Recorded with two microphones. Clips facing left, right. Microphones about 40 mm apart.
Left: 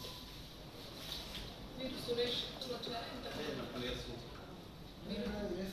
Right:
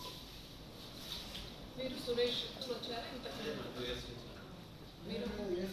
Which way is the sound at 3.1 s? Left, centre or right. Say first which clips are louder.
Even; left.